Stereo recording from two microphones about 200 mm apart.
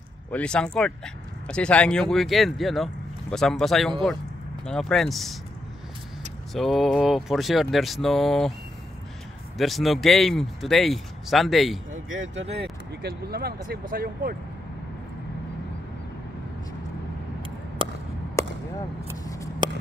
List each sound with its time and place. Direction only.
0.3 s speech: 5° left (ahead or behind)
6.5 s speech: centre (ahead or behind)
9.6 s speech: centre (ahead or behind)
12.1 s speech: 65° right (ahead or behind); by 14.3 s 45° right (ahead or behind)
17.8 s chop: 25° right (ahead or behind)
18.4 s a sound: 15° left (ahead or behind)
19.2 s scissors: 15° left (ahead or behind)